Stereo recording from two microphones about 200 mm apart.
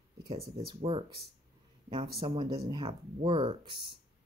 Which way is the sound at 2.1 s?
25° right (ahead or behind).